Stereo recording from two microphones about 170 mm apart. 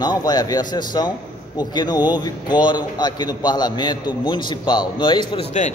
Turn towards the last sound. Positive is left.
turn(degrees=30)  # may be behind; listen again after turning